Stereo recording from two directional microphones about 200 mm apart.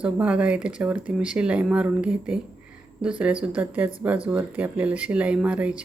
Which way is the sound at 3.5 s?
5° right (ahead or behind).